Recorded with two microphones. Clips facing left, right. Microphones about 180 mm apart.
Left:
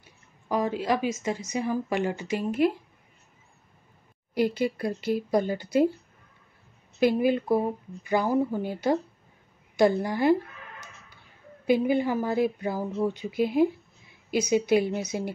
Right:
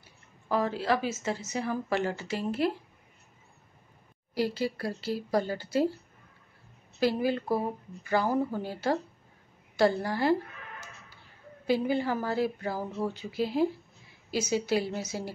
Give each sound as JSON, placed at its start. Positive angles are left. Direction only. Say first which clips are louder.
{"t": 0.0, "sound": "speech", "louder": "even", "side_deg": 15}
{"t": 4.3, "sound": "speech", "louder": "left 4 dB", "side_deg": 20}
{"t": 7.0, "sound": "speech", "louder": "left 5 dB", "side_deg": 20}
{"t": 11.6, "sound": "speech", "louder": "left 4 dB", "side_deg": 15}